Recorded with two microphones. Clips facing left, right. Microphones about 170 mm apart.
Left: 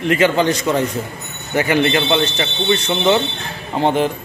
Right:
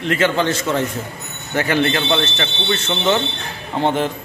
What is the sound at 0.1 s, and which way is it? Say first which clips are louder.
Speech: left 3 dB; 15° left (ahead or behind).